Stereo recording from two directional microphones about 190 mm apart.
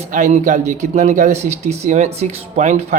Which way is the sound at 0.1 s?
40° right (ahead or behind).